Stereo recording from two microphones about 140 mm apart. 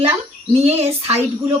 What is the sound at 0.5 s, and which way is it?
Speech, 50° right (ahead or behind).